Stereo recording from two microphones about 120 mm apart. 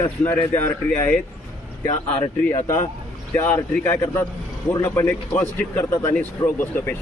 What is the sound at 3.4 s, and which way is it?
A man's voice, 20° left (ahead or behind).